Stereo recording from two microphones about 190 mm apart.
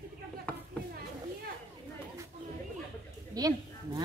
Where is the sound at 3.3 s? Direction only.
20° right (ahead or behind).